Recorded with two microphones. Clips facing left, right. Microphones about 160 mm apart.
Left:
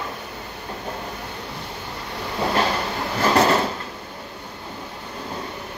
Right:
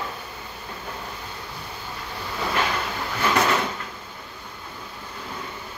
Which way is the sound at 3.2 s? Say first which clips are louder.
Left 4 dB; 35° left (ahead or behind).